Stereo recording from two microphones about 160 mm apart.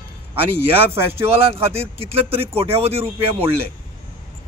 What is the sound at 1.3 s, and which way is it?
Speech, 35° right (ahead or behind).